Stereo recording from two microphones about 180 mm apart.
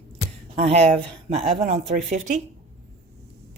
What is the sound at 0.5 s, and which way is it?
Speech, 35° right (ahead or behind).